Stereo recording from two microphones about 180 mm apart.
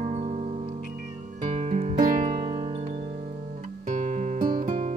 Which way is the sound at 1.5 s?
40° right (ahead or behind).